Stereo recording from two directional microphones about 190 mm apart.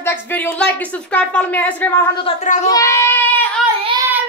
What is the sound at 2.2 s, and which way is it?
Speech, 35° left (ahead or behind).